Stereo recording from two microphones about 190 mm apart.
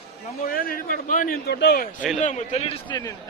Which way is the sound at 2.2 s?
35° left (ahead or behind).